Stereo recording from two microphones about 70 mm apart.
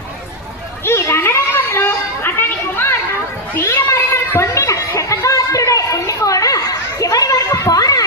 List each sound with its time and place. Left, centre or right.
0.9 s children playing: left
3.8 s chatter: left